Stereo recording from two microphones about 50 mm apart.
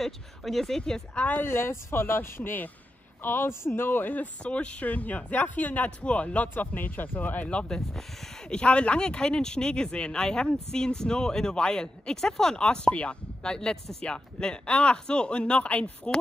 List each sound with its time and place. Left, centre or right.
0.0 s speech: centre
1.1 s speech: left
1.4 s speech: left
4.4 s speech: left
7.4 s speech: centre